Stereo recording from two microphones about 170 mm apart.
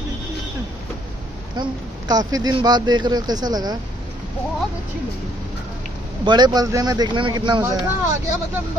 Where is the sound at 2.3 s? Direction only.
25° right (ahead or behind).